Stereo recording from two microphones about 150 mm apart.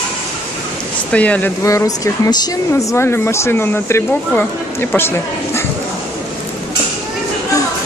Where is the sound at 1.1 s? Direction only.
10° left (ahead or behind).